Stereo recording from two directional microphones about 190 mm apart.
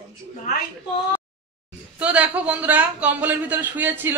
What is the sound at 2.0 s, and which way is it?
Speech, 5° right (ahead or behind).